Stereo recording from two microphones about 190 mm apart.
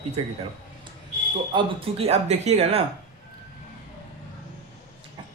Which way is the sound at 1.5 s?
30° right (ahead or behind).